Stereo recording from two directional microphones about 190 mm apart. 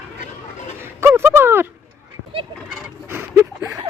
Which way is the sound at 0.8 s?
15° right (ahead or behind).